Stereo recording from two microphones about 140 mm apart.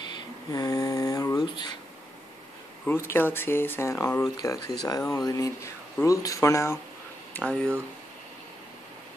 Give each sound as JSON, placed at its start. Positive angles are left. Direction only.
{"t": 0.5, "sound": "snoring", "side_deg": 25}
{"t": 3.1, "sound": "speech", "side_deg": 15}
{"t": 7.3, "sound": "speech", "side_deg": 10}